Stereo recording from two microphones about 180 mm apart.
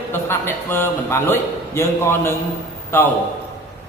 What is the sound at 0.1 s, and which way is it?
A man's voice, 15° left (ahead or behind).